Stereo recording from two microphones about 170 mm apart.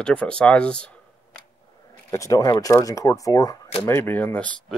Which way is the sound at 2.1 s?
20° left (ahead or behind).